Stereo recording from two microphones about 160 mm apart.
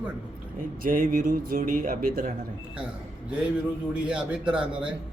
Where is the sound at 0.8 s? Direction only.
55° right (ahead or behind).